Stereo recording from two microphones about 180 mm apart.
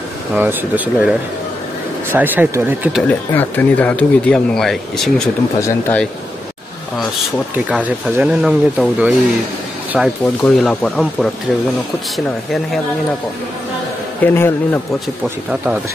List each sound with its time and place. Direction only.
0.3 s speech: 10° right (ahead or behind)
3.0 s speech: 10° left (ahead or behind)
5.6 s a man's voice: 15° left (ahead or behind)
7.5 s speech: 5° right (ahead or behind)
14.2 s a man's voice: 15° left (ahead or behind)